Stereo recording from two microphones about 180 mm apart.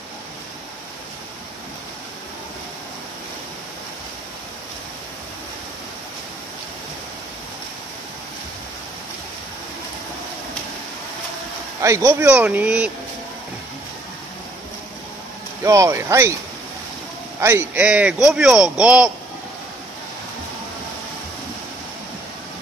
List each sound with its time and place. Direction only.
11.8 s speech: 15° right (ahead or behind)
15.6 s speech: 15° right (ahead or behind)
17.4 s speech: 15° right (ahead or behind)